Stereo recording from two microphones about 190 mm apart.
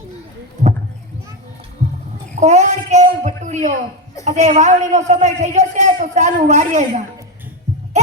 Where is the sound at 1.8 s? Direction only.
35° right (ahead or behind).